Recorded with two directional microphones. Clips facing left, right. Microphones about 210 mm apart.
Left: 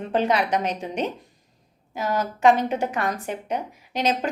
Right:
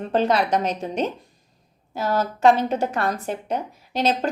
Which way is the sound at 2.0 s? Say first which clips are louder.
Right 2 dB; 35° right (ahead or behind).